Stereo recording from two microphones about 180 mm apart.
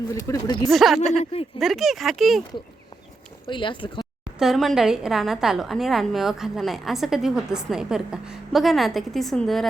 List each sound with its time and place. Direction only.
0.1 s speech: 15° left (ahead or behind)
0.7 s a woman's voice: centre (ahead or behind)
1.2 s speech: 35° left (ahead or behind)
1.5 s a woman's voice: centre (ahead or behind)
3.5 s speech: 25° left (ahead or behind)
4.4 s a woman's voice: centre (ahead or behind)